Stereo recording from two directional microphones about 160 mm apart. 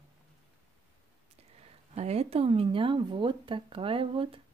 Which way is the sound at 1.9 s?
40° right (ahead or behind).